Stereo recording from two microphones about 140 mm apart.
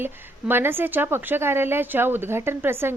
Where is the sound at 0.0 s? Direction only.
15° right (ahead or behind).